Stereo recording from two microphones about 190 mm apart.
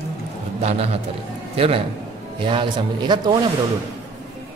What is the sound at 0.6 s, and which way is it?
Speech, 35° right (ahead or behind).